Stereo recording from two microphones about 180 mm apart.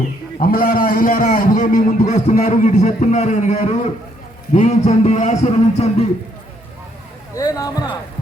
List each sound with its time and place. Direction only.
0.3 s a man's voice: 50° left (ahead or behind)
7.3 s speech: 20° left (ahead or behind)